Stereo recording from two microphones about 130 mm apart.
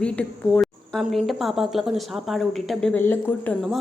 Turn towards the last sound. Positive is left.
turn(degrees=15)  # may be behind; listen again after turning